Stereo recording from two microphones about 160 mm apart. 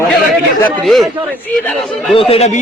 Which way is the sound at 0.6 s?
Centre (ahead or behind).